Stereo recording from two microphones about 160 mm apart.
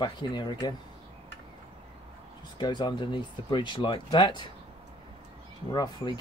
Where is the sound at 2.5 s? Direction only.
30° left (ahead or behind).